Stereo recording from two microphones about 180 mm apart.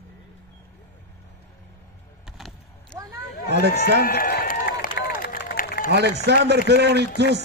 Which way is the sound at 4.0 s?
55° left (ahead or behind).